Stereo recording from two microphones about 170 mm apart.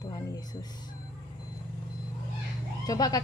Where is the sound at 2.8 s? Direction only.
20° left (ahead or behind).